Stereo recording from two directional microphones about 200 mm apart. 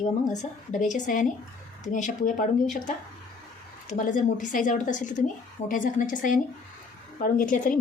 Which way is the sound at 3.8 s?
40° left (ahead or behind).